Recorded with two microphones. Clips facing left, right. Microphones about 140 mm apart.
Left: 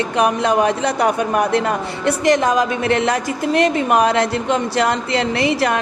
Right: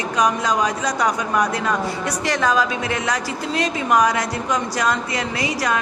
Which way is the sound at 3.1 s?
60° left (ahead or behind).